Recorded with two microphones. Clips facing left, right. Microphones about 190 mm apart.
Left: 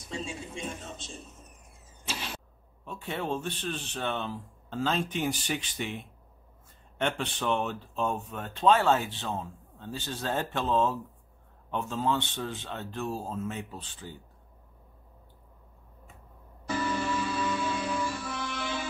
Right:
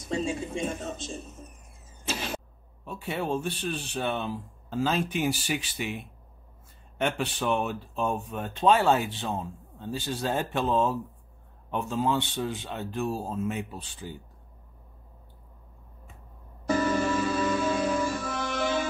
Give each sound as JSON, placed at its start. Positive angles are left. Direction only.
{"t": 0.1, "sound": "speech", "side_deg": -45}
{"t": 2.0, "sound": "a sound", "side_deg": -45}
{"t": 2.8, "sound": "speech", "side_deg": -10}
{"t": 16.6, "sound": "music", "side_deg": -45}